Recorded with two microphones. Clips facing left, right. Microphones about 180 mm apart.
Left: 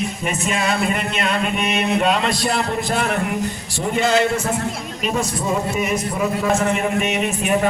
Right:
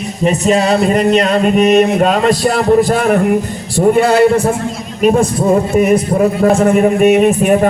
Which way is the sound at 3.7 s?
50° right (ahead or behind).